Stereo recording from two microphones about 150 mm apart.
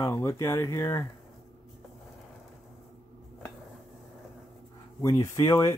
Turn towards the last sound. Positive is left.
turn(degrees=20)  # may be behind; listen again after turning